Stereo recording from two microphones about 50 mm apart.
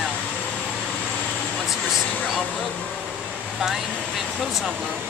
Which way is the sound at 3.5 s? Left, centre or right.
Centre.